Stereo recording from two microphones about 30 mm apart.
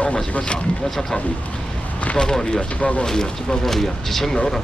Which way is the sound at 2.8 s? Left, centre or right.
Left.